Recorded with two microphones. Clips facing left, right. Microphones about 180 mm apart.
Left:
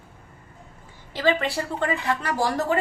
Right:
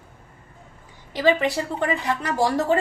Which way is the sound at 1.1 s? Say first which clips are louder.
Right 3 dB; 20° right (ahead or behind).